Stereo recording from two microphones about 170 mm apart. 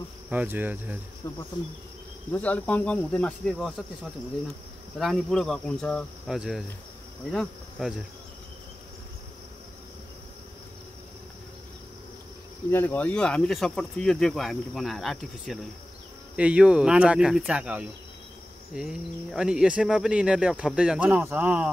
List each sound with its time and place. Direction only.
0.3 s speech: 10° right (ahead or behind)
1.2 s speech: 15° left (ahead or behind); by 3.8 s centre (ahead or behind)
4.9 s speech: centre (ahead or behind)
12.7 s speech: 10° left (ahead or behind); by 21.6 s 10° right (ahead or behind)